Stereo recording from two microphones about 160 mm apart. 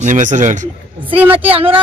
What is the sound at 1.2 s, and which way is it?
Speech, 10° right (ahead or behind).